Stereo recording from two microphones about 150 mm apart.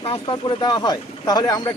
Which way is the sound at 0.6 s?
30° left (ahead or behind).